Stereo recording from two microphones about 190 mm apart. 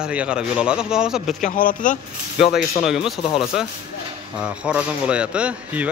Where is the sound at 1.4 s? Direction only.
45° left (ahead or behind).